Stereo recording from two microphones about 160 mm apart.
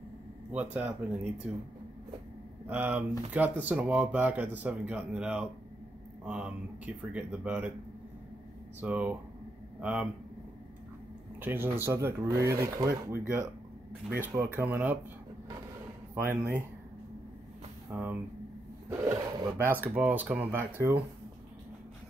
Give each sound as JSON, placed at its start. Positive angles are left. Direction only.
{"t": 0.5, "sound": "speech", "side_deg": -10}
{"t": 2.6, "sound": "speech", "side_deg": -10}
{"t": 8.8, "sound": "speech", "side_deg": -10}
{"t": 11.3, "sound": "speech", "side_deg": -10}
{"t": 16.2, "sound": "speech", "side_deg": -15}
{"t": 17.9, "sound": "speech", "side_deg": -10}